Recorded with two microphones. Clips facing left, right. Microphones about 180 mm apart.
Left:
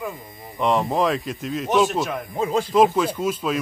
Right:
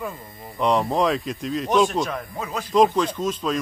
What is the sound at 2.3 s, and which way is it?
Speech, 25° left (ahead or behind).